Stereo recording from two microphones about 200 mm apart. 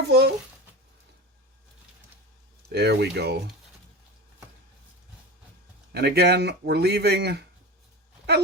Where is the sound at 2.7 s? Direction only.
55° right (ahead or behind).